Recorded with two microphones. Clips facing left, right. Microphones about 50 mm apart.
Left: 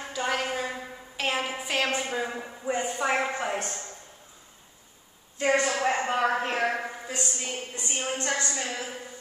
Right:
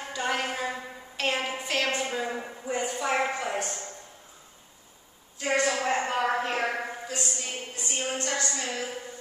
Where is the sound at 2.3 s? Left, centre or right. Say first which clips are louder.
Right 1 dB; centre.